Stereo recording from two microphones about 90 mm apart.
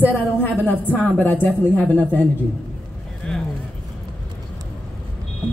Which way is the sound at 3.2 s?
10° left (ahead or behind).